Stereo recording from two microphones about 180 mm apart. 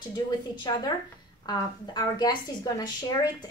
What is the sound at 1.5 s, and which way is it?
A woman's voice, 20° left (ahead or behind).